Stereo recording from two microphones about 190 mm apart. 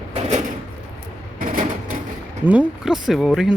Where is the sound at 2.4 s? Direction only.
5° right (ahead or behind).